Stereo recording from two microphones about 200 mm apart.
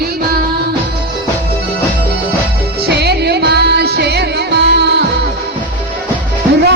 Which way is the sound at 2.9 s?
55° right (ahead or behind).